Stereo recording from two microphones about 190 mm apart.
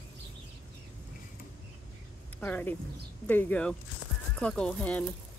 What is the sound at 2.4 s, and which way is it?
Speech, 10° left (ahead or behind).